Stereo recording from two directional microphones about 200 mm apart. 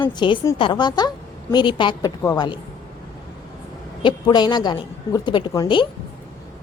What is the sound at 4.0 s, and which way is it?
A woman's voice, 25° left (ahead or behind).